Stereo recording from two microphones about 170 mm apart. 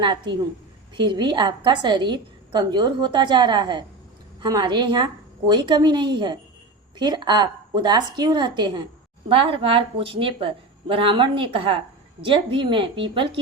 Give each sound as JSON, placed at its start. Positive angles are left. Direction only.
{"t": 0.0, "sound": "a woman's voice", "side_deg": -25}